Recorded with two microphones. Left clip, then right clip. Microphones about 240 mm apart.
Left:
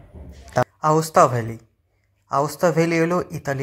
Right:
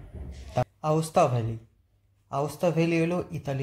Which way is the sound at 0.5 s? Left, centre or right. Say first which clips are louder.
Left 8 dB; centre.